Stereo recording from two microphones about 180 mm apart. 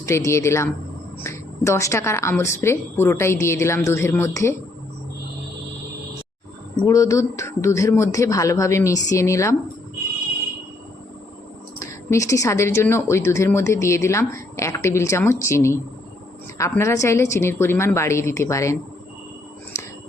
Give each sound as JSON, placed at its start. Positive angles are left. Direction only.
{"t": 0.0, "sound": "a woman's voice", "side_deg": 15}
{"t": 6.8, "sound": "a woman's voice", "side_deg": 15}
{"t": 11.8, "sound": "a woman's voice", "side_deg": 15}
{"t": 19.7, "sound": "whispering", "side_deg": 15}